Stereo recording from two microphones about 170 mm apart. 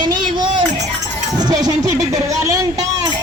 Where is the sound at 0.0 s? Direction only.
25° right (ahead or behind).